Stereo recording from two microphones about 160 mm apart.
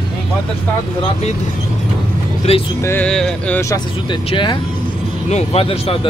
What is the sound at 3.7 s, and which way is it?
Speech, 30° left (ahead or behind).